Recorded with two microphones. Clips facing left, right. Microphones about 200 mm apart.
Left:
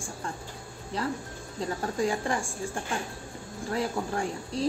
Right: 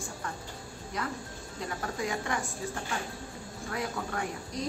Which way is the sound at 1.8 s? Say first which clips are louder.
Left 5 dB; 30° left (ahead or behind).